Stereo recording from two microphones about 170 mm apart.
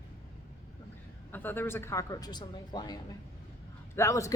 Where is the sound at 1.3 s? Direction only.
10° left (ahead or behind).